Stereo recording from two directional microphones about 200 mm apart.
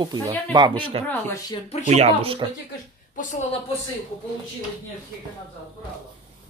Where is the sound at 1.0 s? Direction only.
10° left (ahead or behind).